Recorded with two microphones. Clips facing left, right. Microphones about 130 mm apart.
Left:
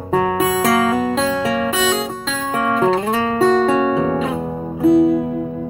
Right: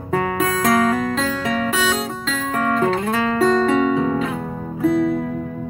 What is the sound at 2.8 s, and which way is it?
Music, 25° left (ahead or behind).